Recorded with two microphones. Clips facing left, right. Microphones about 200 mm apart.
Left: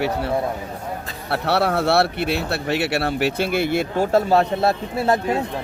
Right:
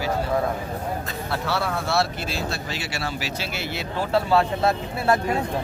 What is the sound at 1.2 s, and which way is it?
Speech, 65° left (ahead or behind).